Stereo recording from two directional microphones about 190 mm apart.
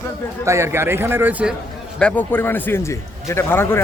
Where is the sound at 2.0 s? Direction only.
10° left (ahead or behind).